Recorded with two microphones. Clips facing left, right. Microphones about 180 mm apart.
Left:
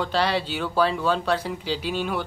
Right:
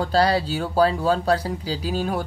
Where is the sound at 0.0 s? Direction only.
40° right (ahead or behind).